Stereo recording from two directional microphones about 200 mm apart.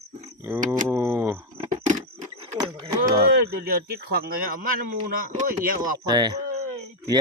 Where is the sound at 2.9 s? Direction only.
20° right (ahead or behind).